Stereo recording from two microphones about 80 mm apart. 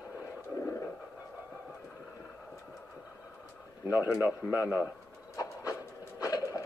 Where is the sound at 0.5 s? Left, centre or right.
Left.